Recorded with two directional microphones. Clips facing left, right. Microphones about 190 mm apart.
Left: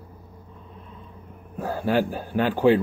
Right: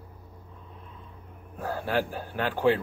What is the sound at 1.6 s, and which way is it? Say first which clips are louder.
A man's voice: left 5 dB; 10° left (ahead or behind).